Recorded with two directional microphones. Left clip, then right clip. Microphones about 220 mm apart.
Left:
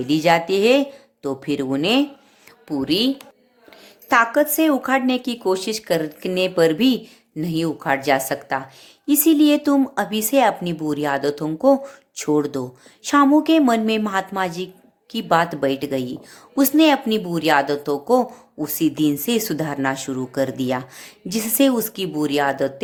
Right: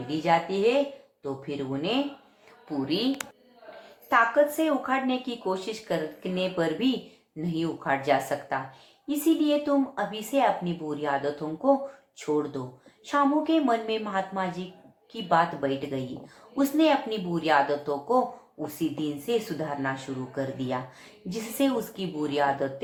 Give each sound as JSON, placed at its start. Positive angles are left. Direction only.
{"t": 0.2, "sound": "speech", "side_deg": 50}
{"t": 4.1, "sound": "speech", "side_deg": 50}